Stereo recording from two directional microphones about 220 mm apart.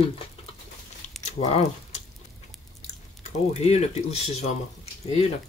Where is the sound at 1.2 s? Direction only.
30° left (ahead or behind).